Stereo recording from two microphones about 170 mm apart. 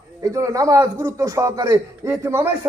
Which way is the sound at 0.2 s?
20° right (ahead or behind).